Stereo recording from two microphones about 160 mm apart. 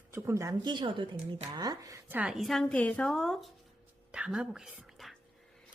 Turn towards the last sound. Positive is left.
turn(degrees=0)  # may be behind; listen again after turning